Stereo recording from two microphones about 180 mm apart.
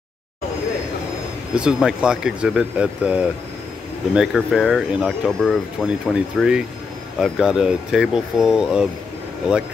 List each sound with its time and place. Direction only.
1.5 s speech: 5° right (ahead or behind)